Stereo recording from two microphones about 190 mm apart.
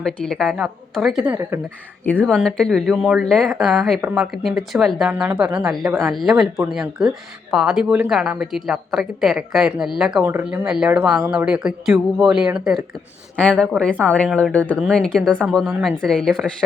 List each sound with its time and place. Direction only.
0.0 s speech: 5° left (ahead or behind)